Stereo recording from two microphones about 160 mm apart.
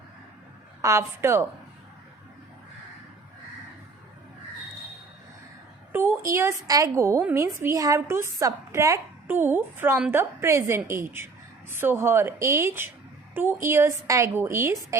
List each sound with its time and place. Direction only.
0.8 s a woman's voice: 20° right (ahead or behind)
5.9 s a woman's voice: 15° right (ahead or behind)